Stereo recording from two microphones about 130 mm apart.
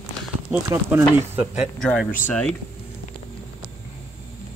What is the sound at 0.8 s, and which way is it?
Speech, 15° right (ahead or behind).